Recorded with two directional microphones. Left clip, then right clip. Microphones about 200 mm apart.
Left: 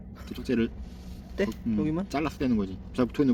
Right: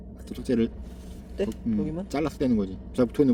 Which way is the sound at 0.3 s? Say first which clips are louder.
Right 2 dB; 15° right (ahead or behind).